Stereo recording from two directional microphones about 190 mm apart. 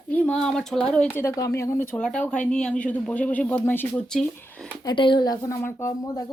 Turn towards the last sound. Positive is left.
turn(degrees=15)  # may be behind; listen again after turning